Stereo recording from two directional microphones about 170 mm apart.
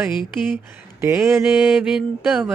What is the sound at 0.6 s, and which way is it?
Mantra, 15° right (ahead or behind).